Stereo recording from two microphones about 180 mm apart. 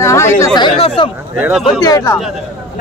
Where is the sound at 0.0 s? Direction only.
15° left (ahead or behind).